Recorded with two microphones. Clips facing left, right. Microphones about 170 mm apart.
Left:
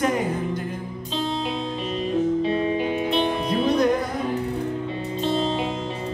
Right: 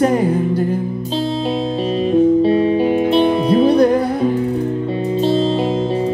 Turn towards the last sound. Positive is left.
turn(degrees=-35)  # may be behind; listen again after turning